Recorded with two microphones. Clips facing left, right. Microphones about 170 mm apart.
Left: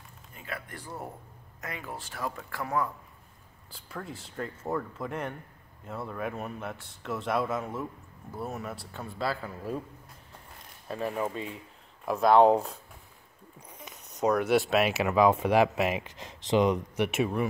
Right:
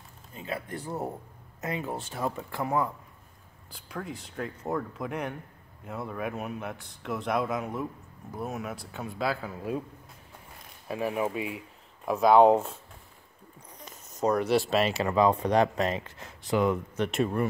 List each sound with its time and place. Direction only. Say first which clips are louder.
0.3 s speech: right 5 dB; 25° right (ahead or behind)
3.7 s speech: right 3 dB; centre (ahead or behind)
7.7 s speech: right 2 dB; 15° right (ahead or behind)
8.5 s speech: right 2 dB; centre (ahead or behind)
10.9 s speech: right 2 dB; 10° right (ahead or behind)